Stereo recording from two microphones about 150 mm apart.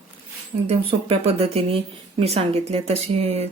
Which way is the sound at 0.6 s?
40° right (ahead or behind).